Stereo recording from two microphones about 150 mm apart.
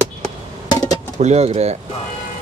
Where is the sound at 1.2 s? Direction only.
45° right (ahead or behind).